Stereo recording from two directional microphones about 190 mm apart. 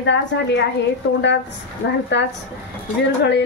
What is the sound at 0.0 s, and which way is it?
Speech, 70° left (ahead or behind).